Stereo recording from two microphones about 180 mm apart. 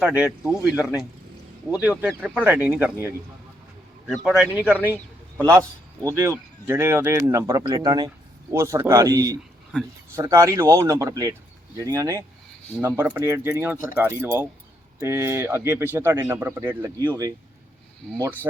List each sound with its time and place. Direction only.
0.0 s a man's voice: 5° right (ahead or behind)
4.0 s a man's voice: centre (ahead or behind); by 17.3 s 20° right (ahead or behind)